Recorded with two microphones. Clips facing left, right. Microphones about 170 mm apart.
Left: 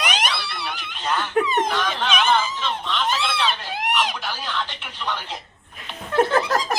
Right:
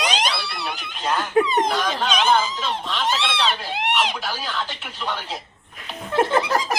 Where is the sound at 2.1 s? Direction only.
15° right (ahead or behind).